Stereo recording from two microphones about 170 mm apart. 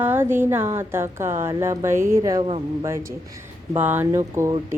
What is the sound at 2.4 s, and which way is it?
Speech, 35° right (ahead or behind).